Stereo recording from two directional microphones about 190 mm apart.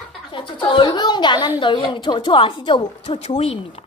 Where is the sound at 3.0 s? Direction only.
35° left (ahead or behind).